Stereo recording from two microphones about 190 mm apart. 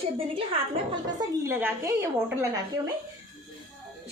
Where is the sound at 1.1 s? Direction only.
15° right (ahead or behind).